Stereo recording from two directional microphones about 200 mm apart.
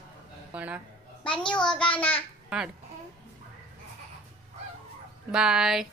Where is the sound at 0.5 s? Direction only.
5° right (ahead or behind).